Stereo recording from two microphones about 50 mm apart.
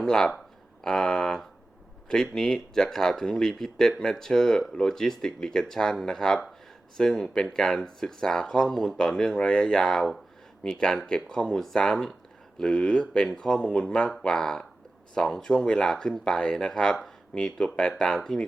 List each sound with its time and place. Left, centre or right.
0.0 s speech: centre